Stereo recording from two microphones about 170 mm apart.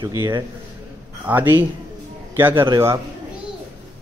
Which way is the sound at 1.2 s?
10° right (ahead or behind).